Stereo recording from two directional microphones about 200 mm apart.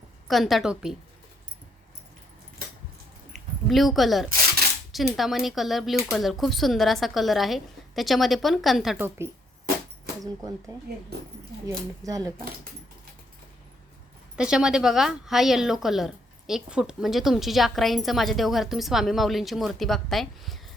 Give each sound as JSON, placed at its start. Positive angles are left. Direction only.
{"t": 0.3, "sound": "a woman's voice", "side_deg": 0}
{"t": 3.3, "sound": "zipper", "side_deg": 0}
{"t": 4.9, "sound": "a woman's voice", "side_deg": 0}
{"t": 9.0, "sound": "speech", "side_deg": -10}
{"t": 11.6, "sound": "speech", "side_deg": -15}
{"t": 14.3, "sound": "a woman's voice", "side_deg": -5}